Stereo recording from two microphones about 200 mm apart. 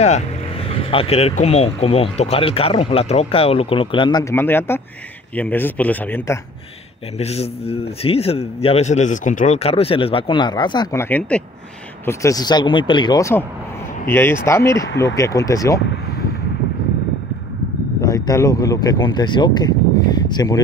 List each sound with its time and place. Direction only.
0.7 s speech: 30° left (ahead or behind); by 6.4 s 10° left (ahead or behind)
7.2 s speech: 30° left (ahead or behind)
18.0 s speech: 15° left (ahead or behind)